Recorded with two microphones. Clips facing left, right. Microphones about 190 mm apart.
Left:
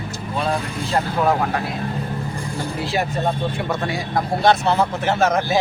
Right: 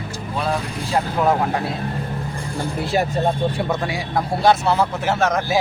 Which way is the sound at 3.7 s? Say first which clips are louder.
Even; 10° right (ahead or behind).